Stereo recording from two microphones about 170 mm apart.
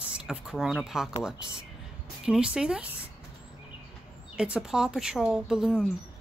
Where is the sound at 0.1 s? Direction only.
5° right (ahead or behind).